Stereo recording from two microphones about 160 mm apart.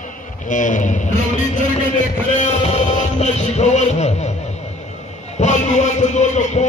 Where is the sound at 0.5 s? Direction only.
55° left (ahead or behind).